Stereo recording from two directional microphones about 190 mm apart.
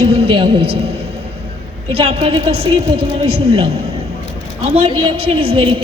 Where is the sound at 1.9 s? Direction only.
30° right (ahead or behind).